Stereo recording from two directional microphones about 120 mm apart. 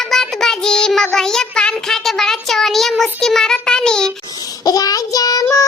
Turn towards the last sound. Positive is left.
turn(degrees=30)  # may be behind; listen again after turning